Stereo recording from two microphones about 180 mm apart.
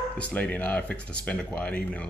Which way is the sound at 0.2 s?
10° left (ahead or behind).